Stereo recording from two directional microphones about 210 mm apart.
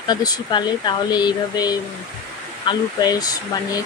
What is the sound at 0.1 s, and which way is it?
Speech, 20° left (ahead or behind).